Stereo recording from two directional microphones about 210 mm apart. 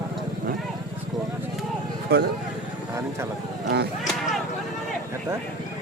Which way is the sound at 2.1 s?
50° right (ahead or behind).